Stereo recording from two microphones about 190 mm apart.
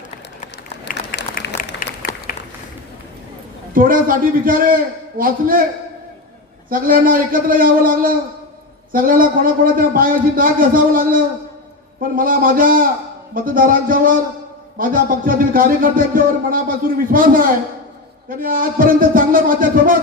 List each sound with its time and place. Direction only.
0.9 s applause: 50° left (ahead or behind)
3.8 s a man's voice: 45° right (ahead or behind)
6.7 s a man's voice: 45° right (ahead or behind)